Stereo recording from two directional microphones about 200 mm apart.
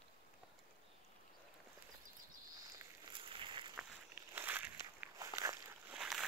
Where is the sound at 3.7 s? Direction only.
10° right (ahead or behind).